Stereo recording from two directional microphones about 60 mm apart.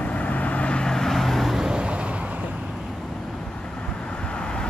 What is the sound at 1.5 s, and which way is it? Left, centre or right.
Vehicle, centre.